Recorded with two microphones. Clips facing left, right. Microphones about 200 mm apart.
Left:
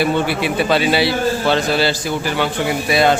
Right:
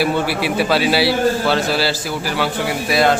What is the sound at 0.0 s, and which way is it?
A man's voice, 5° right (ahead or behind).